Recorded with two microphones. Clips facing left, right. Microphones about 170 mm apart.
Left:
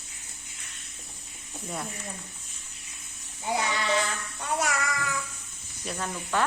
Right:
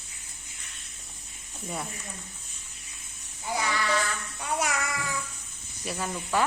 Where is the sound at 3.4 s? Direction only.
25° left (ahead or behind).